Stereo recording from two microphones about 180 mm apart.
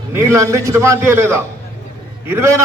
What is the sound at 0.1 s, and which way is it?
Speech, 15° right (ahead or behind).